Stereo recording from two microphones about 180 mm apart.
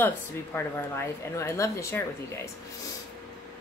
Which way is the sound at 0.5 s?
15° left (ahead or behind).